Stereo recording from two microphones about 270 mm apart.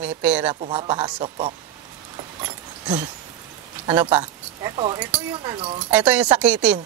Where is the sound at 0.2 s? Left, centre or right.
Centre.